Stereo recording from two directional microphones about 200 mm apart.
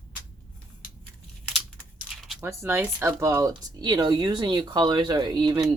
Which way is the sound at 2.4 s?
15° right (ahead or behind).